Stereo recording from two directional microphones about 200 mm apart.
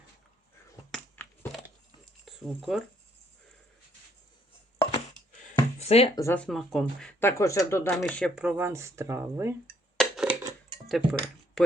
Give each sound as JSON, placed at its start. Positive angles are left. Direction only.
{"t": 0.9, "sound": "a sound", "side_deg": 5}
{"t": 2.2, "sound": "speech", "side_deg": 0}
{"t": 4.8, "sound": "a sound", "side_deg": 30}
{"t": 5.8, "sound": "speech", "side_deg": 30}
{"t": 6.1, "sound": "speech", "side_deg": 10}
{"t": 7.2, "sound": "speech", "side_deg": 15}
{"t": 8.4, "sound": "speech", "side_deg": -10}
{"t": 10.0, "sound": "a sound", "side_deg": -5}
{"t": 10.8, "sound": "speech", "side_deg": 0}